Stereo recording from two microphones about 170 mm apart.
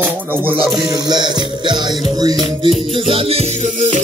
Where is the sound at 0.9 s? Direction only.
25° right (ahead or behind).